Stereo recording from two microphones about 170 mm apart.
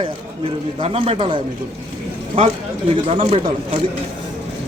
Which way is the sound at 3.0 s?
40° right (ahead or behind).